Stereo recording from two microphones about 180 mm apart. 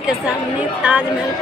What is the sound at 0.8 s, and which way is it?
Speech, 5° right (ahead or behind).